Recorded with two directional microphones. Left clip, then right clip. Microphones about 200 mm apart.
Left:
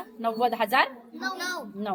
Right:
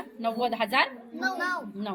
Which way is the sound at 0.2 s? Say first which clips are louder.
Left 2 dB; 10° left (ahead or behind).